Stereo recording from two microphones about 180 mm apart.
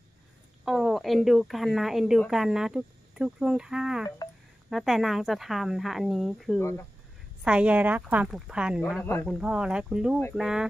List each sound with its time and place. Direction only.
0.7 s a woman's voice: centre (ahead or behind)
6.6 s speech: 15° left (ahead or behind)
7.4 s a woman's voice: 5° right (ahead or behind)